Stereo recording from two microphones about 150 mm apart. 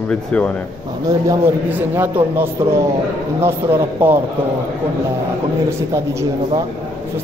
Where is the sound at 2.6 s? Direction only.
20° right (ahead or behind).